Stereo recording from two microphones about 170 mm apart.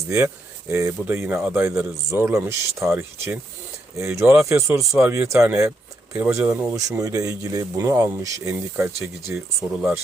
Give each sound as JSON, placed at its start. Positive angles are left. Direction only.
{"t": 0.7, "sound": "speech", "side_deg": -15}